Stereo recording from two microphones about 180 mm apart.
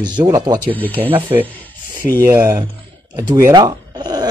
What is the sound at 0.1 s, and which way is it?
Speech, 25° right (ahead or behind).